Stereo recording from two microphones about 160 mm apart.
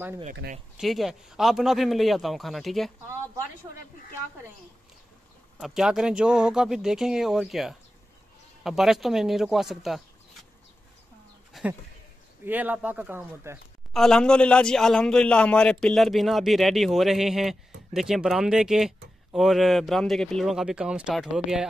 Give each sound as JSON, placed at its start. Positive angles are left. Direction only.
{"t": 0.3, "sound": "speech", "side_deg": -60}
{"t": 0.7, "sound": "speech", "side_deg": 0}
{"t": 5.6, "sound": "speech", "side_deg": -5}
{"t": 11.5, "sound": "a sound", "side_deg": 0}
{"t": 12.4, "sound": "speech", "side_deg": -10}
{"t": 13.9, "sound": "speech", "side_deg": 5}